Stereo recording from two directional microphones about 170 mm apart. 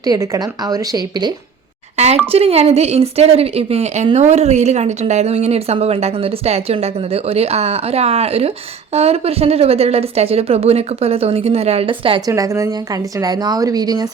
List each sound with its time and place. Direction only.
0.0 s a woman's voice: 20° right (ahead or behind)
2.3 s a woman's voice: 35° right (ahead or behind)
12.3 s a woman's voice: 20° right (ahead or behind)